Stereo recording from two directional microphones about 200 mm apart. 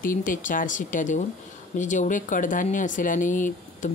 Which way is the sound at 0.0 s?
40° left (ahead or behind).